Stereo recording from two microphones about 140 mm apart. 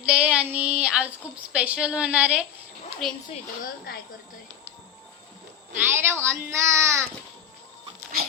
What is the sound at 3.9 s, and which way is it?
Speech, 90° left.